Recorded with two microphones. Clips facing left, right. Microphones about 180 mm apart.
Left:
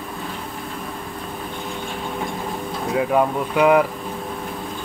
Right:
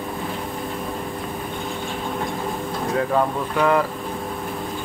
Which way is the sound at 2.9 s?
15° left (ahead or behind).